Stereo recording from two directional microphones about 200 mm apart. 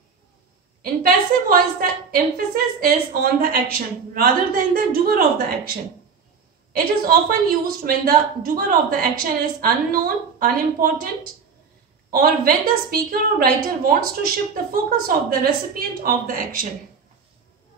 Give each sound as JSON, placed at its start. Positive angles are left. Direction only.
{"t": 1.0, "sound": "a woman's voice", "side_deg": -45}
{"t": 6.7, "sound": "a woman's voice", "side_deg": -45}
{"t": 12.1, "sound": "a woman's voice", "side_deg": -45}